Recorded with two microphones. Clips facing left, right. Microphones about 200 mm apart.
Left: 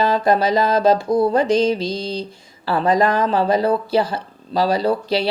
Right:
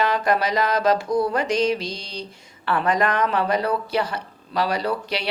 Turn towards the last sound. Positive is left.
turn(degrees=30)  # may be behind; listen again after turning